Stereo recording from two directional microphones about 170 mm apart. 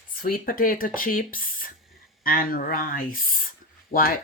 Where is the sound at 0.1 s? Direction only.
60° left (ahead or behind).